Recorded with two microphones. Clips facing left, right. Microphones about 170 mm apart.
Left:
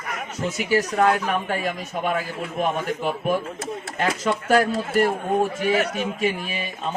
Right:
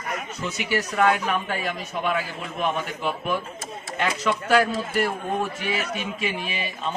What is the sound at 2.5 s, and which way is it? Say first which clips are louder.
Speech: left 2 dB; 45° left (ahead or behind).